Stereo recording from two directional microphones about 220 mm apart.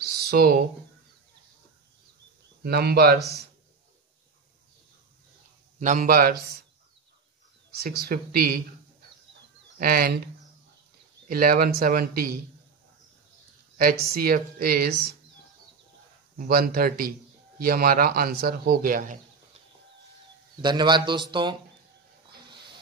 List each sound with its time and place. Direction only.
0.0 s a sound: 45° right (ahead or behind)
2.6 s speech: 45° right (ahead or behind)
5.8 s speech: 35° right (ahead or behind)
7.7 s speech: 45° right (ahead or behind)
9.8 s speech: 40° right (ahead or behind)
13.7 s speech: 45° right (ahead or behind)
16.3 s speech: 40° right (ahead or behind)
20.6 s speech: 20° right (ahead or behind)